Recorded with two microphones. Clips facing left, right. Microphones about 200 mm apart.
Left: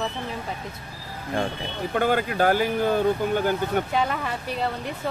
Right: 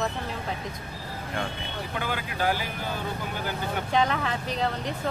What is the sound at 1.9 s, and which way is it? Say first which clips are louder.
Speech: left 10 dB; 50° left (ahead or behind).